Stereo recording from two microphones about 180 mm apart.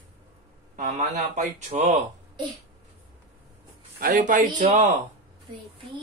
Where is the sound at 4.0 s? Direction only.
45° right (ahead or behind).